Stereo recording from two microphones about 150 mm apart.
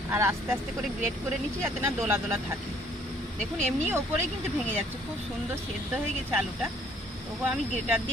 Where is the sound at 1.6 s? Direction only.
15° right (ahead or behind).